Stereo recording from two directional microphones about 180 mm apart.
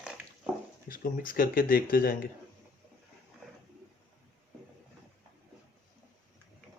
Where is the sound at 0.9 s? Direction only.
50° left (ahead or behind).